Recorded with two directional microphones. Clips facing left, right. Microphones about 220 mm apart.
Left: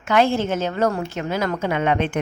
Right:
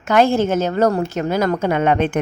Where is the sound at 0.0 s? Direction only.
40° right (ahead or behind).